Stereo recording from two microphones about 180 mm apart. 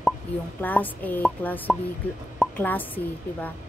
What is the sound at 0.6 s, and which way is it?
A woman's voice, 10° left (ahead or behind).